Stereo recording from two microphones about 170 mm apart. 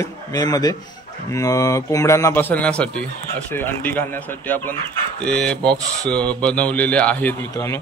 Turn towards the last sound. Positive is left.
turn(degrees=10)  # may be behind; listen again after turning